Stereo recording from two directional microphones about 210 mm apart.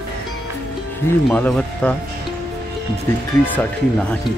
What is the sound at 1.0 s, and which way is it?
Speech, 5° left (ahead or behind).